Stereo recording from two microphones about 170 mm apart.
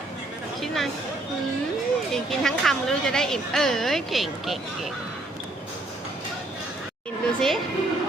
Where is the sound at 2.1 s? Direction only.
Centre (ahead or behind).